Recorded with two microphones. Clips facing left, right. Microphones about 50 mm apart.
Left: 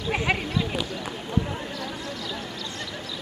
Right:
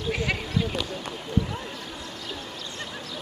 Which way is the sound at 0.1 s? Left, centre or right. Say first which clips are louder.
Left 3 dB; left.